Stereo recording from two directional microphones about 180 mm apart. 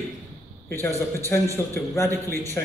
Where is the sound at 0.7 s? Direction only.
15° left (ahead or behind).